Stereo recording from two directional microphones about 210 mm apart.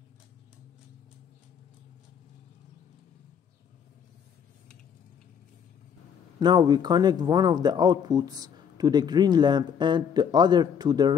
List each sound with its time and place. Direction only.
6.4 s speech: 20° right (ahead or behind)